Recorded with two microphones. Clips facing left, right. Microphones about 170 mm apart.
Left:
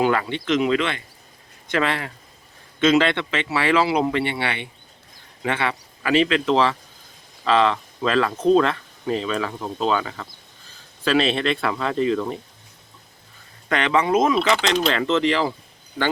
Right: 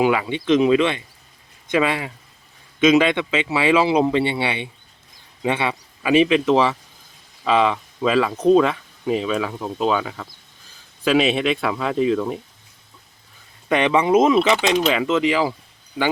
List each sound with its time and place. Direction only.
0.0 s speech: 10° right (ahead or behind)
13.7 s speech: 15° right (ahead or behind)